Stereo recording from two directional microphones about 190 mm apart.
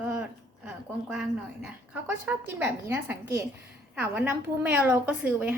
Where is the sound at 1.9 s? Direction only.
10° right (ahead or behind).